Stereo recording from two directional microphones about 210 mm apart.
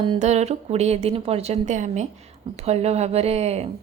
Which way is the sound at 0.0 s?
25° right (ahead or behind).